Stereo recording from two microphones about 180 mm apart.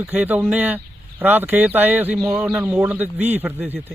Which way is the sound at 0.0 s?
10° right (ahead or behind).